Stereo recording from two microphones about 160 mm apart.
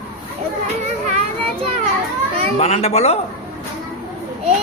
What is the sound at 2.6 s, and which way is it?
Speech, 45° left (ahead or behind).